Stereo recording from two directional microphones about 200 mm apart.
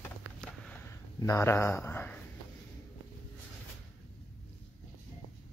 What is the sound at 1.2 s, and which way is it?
Speech, 15° left (ahead or behind).